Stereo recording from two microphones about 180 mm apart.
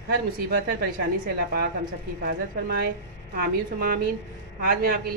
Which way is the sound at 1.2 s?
60° right (ahead or behind).